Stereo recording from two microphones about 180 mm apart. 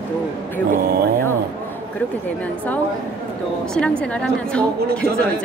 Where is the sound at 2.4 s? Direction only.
10° left (ahead or behind).